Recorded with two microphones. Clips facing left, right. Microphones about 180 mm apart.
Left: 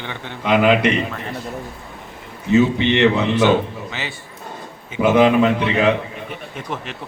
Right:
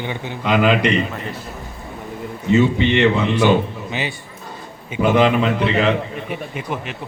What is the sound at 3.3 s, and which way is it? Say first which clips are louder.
Speech: even; 15° right (ahead or behind).